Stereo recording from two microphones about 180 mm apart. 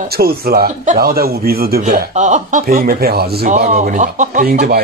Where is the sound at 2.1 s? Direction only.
40° right (ahead or behind); by 3.5 s 60° right (ahead or behind).